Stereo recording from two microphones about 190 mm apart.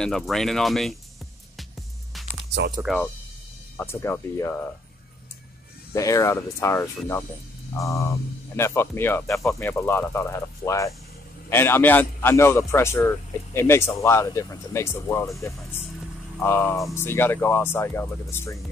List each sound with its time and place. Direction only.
0.0 s speech: centre (ahead or behind)
2.9 s speech: centre (ahead or behind)
3.7 s a man's voice: 10° left (ahead or behind)
5.9 s a man's voice: 15° left (ahead or behind)
16.3 s a man's voice: 10° left (ahead or behind)